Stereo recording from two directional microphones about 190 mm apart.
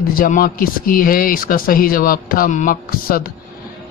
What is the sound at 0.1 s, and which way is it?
Speech, 50° left (ahead or behind).